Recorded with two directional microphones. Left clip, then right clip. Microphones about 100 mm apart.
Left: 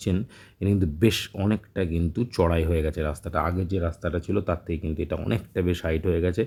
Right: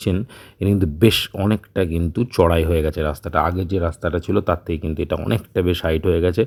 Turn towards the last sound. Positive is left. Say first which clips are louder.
# right 7 dB
turn(degrees=-40)  # may be behind; listen again after turning